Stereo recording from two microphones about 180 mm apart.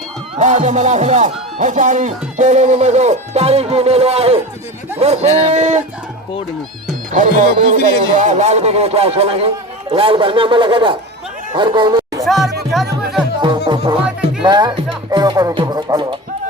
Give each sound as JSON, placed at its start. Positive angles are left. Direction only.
{"t": 0.3, "sound": "speech", "side_deg": -40}
{"t": 7.1, "sound": "speech", "side_deg": -45}
{"t": 9.9, "sound": "music", "side_deg": -30}
{"t": 11.5, "sound": "speech", "side_deg": -25}
{"t": 12.2, "sound": "music", "side_deg": 0}
{"t": 12.7, "sound": "speech", "side_deg": 0}
{"t": 14.4, "sound": "music", "side_deg": -25}